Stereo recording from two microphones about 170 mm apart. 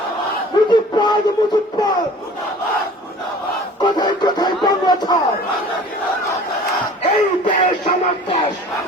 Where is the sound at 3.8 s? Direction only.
25° left (ahead or behind).